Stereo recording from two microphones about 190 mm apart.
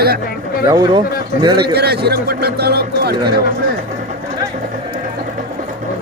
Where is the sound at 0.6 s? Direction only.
20° right (ahead or behind).